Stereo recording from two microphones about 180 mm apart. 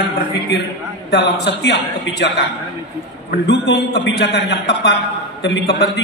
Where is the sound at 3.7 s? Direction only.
70° left (ahead or behind).